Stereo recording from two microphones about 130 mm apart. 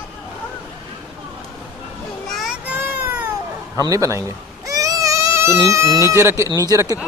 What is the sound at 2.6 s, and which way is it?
Baby cry, 15° right (ahead or behind).